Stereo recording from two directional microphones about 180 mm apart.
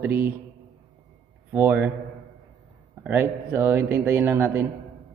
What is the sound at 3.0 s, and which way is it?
A man's voice, 10° right (ahead or behind).